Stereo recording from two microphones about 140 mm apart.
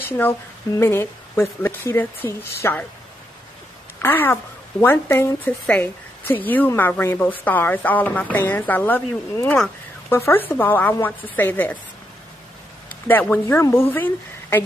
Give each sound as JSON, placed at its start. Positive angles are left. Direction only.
{"t": 0.0, "sound": "a woman's voice", "side_deg": 15}
{"t": 4.0, "sound": "a woman's voice", "side_deg": 15}
{"t": 13.0, "sound": "a woman's voice", "side_deg": 15}